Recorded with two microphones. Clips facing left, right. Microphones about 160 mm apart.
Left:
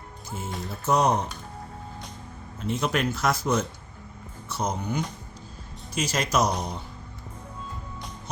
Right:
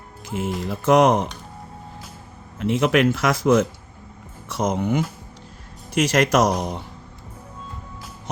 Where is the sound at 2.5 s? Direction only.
90° right.